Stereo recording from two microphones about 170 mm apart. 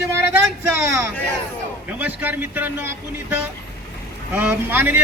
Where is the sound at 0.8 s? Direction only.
15° right (ahead or behind).